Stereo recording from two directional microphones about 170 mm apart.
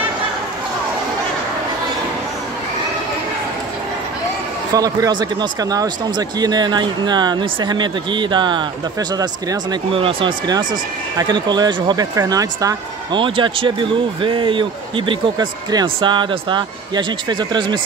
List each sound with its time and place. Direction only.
4.7 s speech: 20° right (ahead or behind)